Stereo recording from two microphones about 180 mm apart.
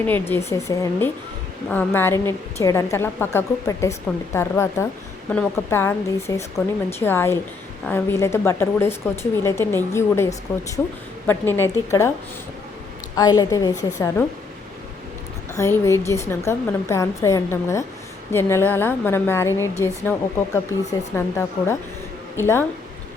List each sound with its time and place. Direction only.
0.0 s a woman's voice: 10° left (ahead or behind)
13.1 s a woman's voice: 20° left (ahead or behind)
15.5 s a woman's voice: 15° left (ahead or behind)